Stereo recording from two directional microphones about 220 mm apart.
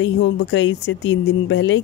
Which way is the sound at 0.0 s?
60° left (ahead or behind).